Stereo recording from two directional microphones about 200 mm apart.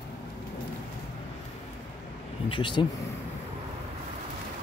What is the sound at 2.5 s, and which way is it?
Speech, 25° left (ahead or behind).